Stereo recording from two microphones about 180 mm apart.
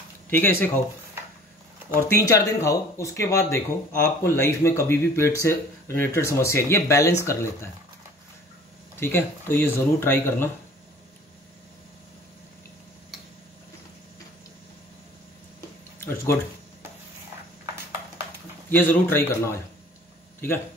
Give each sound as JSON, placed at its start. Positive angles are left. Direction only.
{"t": 0.3, "sound": "speech", "side_deg": 10}
{"t": 2.0, "sound": "speech", "side_deg": 15}
{"t": 8.9, "sound": "speech", "side_deg": 10}
{"t": 16.0, "sound": "a sound", "side_deg": 15}
{"t": 18.7, "sound": "speech", "side_deg": 10}